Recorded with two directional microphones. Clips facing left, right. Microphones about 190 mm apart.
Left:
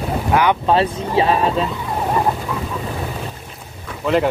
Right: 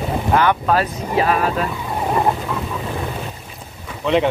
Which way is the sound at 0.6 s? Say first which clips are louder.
Left 2 dB; 25° left (ahead or behind).